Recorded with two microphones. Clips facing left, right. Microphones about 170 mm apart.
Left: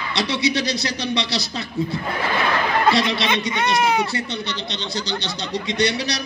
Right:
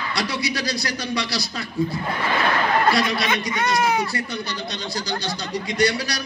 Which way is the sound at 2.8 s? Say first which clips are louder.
Left 2 dB; 25° left (ahead or behind).